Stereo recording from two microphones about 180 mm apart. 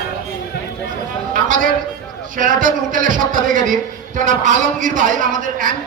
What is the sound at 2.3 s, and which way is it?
A man's voice, 50° right (ahead or behind).